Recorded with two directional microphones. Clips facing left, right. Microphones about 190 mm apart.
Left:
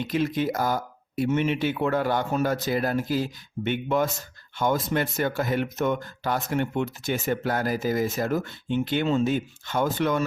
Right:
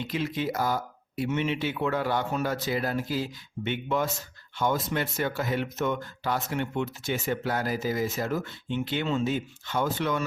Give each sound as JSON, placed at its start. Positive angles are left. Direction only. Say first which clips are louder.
{"t": 0.1, "sound": "speech", "louder": "left 5 dB", "side_deg": 50}